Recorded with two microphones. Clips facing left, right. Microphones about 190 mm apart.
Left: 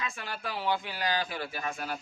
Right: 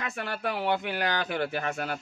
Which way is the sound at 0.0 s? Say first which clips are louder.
Right 5 dB; 60° right (ahead or behind).